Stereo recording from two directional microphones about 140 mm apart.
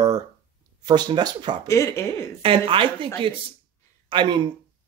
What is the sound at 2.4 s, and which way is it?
Speech, 40° right (ahead or behind).